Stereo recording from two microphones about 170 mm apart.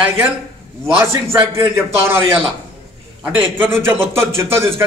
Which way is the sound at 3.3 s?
10° right (ahead or behind).